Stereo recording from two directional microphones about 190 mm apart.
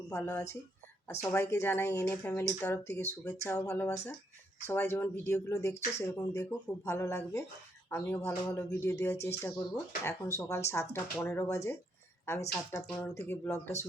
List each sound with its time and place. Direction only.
0.1 s speech: 10° left (ahead or behind)